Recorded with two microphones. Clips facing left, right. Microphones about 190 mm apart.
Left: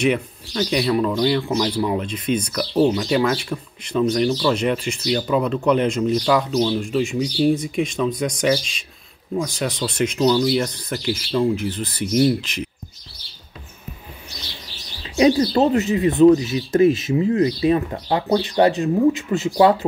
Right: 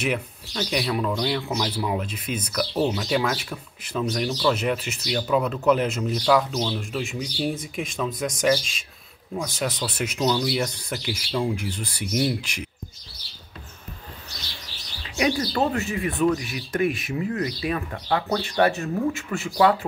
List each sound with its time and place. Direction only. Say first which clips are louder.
0.0 s speech: left 7 dB; 5° right (ahead or behind)
15.0 s speech: left 8 dB; 25° left (ahead or behind)